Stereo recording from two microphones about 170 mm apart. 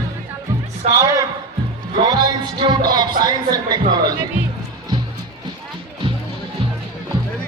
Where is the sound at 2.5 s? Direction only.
25° right (ahead or behind).